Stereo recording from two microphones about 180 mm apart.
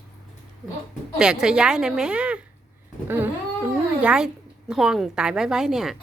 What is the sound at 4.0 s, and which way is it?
A woman's voice, 5° right (ahead or behind).